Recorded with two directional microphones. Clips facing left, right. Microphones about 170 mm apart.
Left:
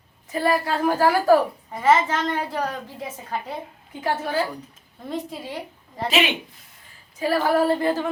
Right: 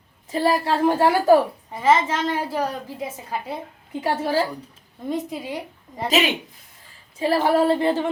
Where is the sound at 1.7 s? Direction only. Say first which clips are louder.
Even; centre (ahead or behind).